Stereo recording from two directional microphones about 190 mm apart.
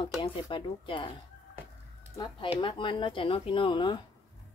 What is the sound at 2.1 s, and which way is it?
Speech, 25° left (ahead or behind).